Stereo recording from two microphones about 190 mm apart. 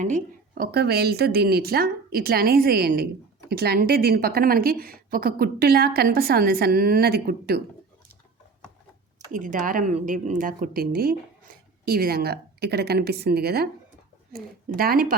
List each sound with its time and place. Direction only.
0.0 s a woman's voice: 45° right (ahead or behind)
9.3 s a woman's voice: 45° right (ahead or behind)